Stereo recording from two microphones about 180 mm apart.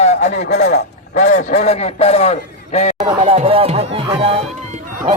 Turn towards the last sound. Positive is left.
turn(degrees=-35)  # may be behind; listen again after turning